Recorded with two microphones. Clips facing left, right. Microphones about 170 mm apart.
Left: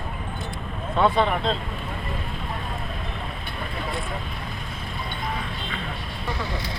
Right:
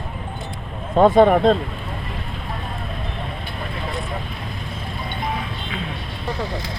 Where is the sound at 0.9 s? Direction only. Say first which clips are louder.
Right 9 dB; 45° right (ahead or behind).